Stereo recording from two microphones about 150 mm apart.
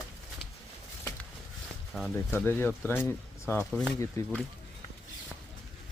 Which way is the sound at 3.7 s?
5° left (ahead or behind).